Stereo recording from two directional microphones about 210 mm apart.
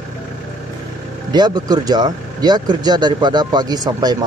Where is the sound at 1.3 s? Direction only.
20° right (ahead or behind).